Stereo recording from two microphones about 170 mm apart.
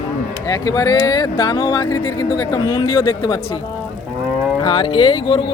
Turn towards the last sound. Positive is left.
turn(degrees=30)  # may be behind; listen again after turning